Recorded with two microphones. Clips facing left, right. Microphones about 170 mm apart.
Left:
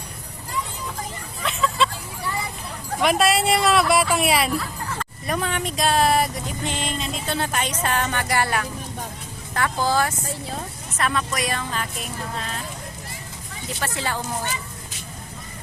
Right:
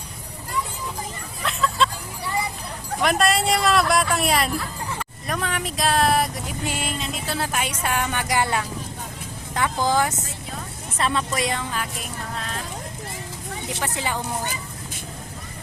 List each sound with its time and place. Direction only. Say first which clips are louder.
1.5 s a sound: even; centre (ahead or behind)
3.0 s speech: left 1 dB; centre (ahead or behind); by 10.2 s 15° right (ahead or behind)
10.9 s a woman's voice: right 1 dB; 25° right (ahead or behind)
13.7 s speech: left 1 dB; 20° right (ahead or behind)